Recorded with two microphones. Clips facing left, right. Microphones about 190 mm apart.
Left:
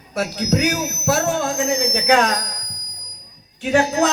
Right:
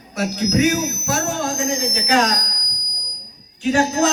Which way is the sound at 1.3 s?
45° right (ahead or behind).